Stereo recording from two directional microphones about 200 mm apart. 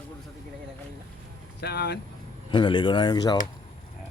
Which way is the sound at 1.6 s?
55° left (ahead or behind).